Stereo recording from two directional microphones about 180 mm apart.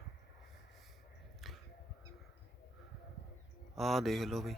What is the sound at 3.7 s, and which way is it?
Speech, centre (ahead or behind).